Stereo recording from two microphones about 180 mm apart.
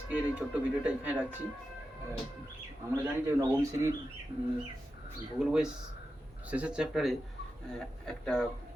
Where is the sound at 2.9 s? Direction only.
15° right (ahead or behind).